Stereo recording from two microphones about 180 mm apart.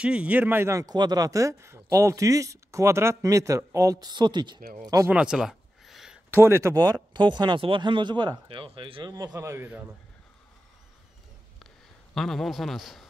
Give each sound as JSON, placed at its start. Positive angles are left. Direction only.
{"t": 0.0, "sound": "speech", "side_deg": -5}
{"t": 4.6, "sound": "speech", "side_deg": -55}
{"t": 4.8, "sound": "speech", "side_deg": -20}
{"t": 5.1, "sound": "a sound", "side_deg": -5}
{"t": 6.3, "sound": "speech", "side_deg": -15}
{"t": 11.6, "sound": "a sound", "side_deg": 0}